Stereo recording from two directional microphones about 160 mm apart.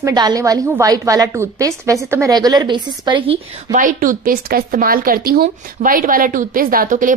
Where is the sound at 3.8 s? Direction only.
55° right (ahead or behind).